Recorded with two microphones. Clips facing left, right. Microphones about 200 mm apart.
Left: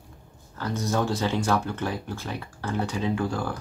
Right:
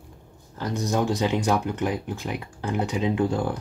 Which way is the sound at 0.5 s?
15° right (ahead or behind).